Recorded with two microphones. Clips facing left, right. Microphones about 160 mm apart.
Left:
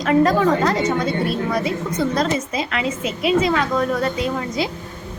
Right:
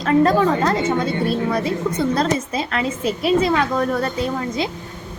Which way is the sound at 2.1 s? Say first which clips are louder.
Right 1 dB; 30° right (ahead or behind).